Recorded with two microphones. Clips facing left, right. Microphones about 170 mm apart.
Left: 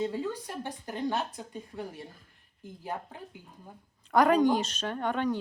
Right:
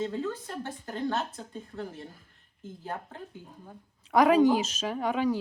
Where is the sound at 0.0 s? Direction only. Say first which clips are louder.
Even; 10° left (ahead or behind).